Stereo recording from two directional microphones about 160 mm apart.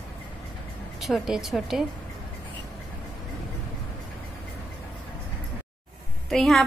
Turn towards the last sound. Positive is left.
turn(degrees=0)  # may be behind; listen again after turning